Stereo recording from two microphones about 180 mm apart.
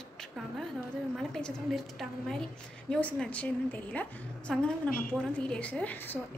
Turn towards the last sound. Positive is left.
turn(degrees=10)  # may be behind; listen again after turning